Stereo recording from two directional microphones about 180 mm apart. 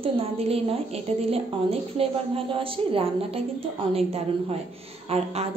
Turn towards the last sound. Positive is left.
turn(degrees=-35)  # may be behind; listen again after turning